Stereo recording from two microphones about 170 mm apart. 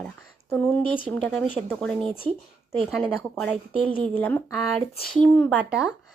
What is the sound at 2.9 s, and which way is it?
Speech, 5° left (ahead or behind).